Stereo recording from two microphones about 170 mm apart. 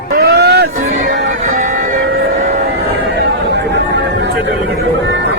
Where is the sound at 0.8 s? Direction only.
55° right (ahead or behind).